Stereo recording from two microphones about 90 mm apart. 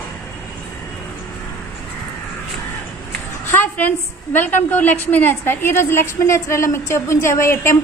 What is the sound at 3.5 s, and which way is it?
A woman's voice, 20° left (ahead or behind).